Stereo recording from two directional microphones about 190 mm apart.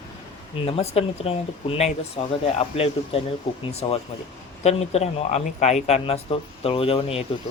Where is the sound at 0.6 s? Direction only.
30° left (ahead or behind).